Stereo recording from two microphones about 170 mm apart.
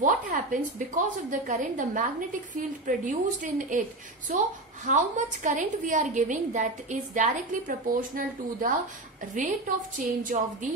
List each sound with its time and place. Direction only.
0.0 s a woman's voice: 50° right (ahead or behind)
9.9 s a woman's voice: 50° right (ahead or behind)